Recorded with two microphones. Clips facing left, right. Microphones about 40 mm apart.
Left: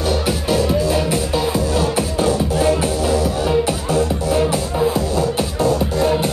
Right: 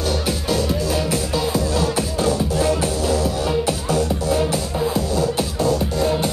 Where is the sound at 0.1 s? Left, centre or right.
Centre.